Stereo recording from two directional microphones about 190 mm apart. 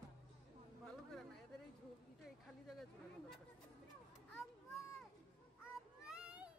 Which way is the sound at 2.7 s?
Centre (ahead or behind).